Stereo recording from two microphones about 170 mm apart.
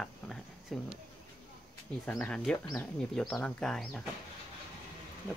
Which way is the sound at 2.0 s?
5° left (ahead or behind).